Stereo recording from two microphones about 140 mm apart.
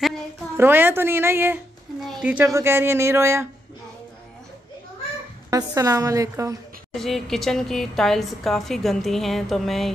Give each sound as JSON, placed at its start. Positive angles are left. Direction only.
{"t": 0.6, "sound": "a woman's voice", "side_deg": -15}
{"t": 5.5, "sound": "a woman's voice", "side_deg": -25}
{"t": 6.9, "sound": "a woman's voice", "side_deg": 0}